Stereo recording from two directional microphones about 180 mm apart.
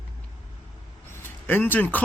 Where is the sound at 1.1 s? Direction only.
10° left (ahead or behind).